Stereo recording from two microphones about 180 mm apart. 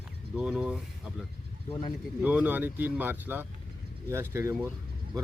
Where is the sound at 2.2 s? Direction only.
10° right (ahead or behind).